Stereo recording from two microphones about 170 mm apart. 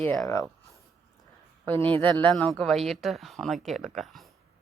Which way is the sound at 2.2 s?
5° left (ahead or behind).